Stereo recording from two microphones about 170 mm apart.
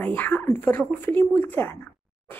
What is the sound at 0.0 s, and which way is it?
A woman's voice, 10° left (ahead or behind).